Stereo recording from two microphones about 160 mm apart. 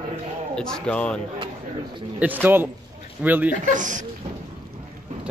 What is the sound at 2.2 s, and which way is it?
A man's voice, 10° right (ahead or behind).